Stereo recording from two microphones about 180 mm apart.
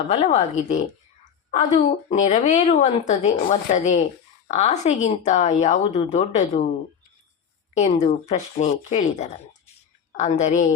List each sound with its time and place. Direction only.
0.1 s speech: 35° left (ahead or behind)
2.1 s speech: 40° left (ahead or behind)
7.7 s speech: 40° left (ahead or behind)